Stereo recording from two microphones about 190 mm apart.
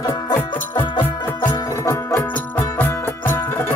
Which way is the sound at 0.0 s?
20° left (ahead or behind).